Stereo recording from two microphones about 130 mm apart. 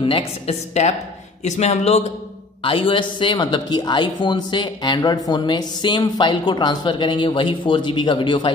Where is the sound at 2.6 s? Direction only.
40° left (ahead or behind).